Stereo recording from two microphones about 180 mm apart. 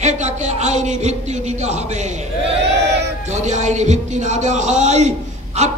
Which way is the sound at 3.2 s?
40° right (ahead or behind).